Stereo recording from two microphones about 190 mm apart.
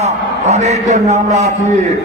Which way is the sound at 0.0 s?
35° right (ahead or behind).